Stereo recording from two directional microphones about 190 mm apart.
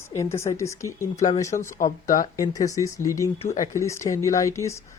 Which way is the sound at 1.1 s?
35° left (ahead or behind).